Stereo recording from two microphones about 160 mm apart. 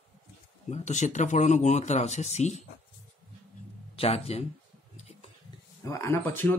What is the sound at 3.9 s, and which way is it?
Speech, 40° left (ahead or behind).